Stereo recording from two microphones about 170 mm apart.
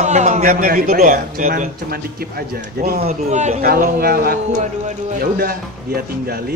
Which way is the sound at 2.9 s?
40° right (ahead or behind).